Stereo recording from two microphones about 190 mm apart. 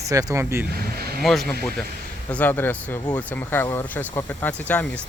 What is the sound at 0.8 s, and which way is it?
Vehicle, 55° right (ahead or behind).